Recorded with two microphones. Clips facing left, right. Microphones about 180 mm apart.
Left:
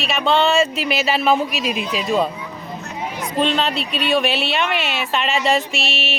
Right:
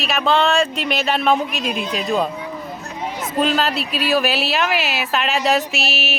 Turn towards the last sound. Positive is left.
turn(degrees=0)  # may be behind; listen again after turning